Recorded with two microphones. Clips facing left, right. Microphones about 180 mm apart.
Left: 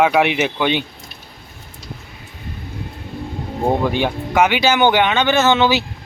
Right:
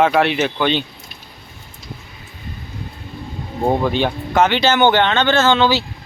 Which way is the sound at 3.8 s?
10° left (ahead or behind).